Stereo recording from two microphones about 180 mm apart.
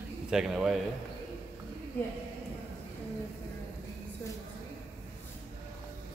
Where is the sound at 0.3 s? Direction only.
5° right (ahead or behind).